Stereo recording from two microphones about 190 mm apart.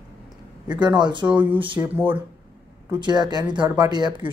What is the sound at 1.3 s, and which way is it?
Speech, 10° right (ahead or behind).